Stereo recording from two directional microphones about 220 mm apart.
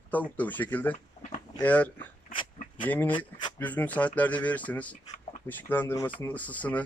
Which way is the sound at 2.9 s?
5° left (ahead or behind).